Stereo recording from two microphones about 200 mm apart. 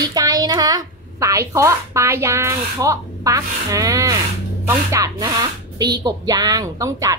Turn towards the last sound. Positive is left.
turn(degrees=-15)  # may be behind; listen again after turning